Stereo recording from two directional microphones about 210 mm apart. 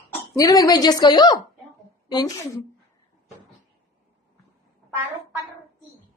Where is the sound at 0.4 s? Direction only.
15° left (ahead or behind).